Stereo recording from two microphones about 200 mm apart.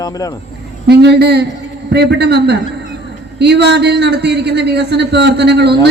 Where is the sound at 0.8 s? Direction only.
55° right (ahead or behind).